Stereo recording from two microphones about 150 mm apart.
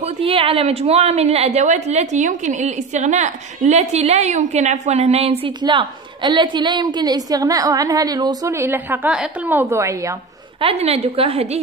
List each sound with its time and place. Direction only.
0.2 s a woman's voice: 35° right (ahead or behind)
5.6 s a woman's voice: 30° right (ahead or behind)
10.6 s a woman's voice: 45° right (ahead or behind)